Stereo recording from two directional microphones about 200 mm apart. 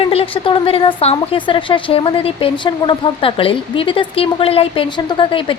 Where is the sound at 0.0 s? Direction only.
30° left (ahead or behind).